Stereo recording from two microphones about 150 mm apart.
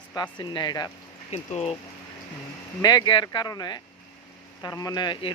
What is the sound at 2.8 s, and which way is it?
Speech, 30° left (ahead or behind).